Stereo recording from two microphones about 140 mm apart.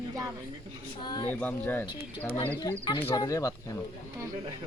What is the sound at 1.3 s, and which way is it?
Speech, 15° left (ahead or behind).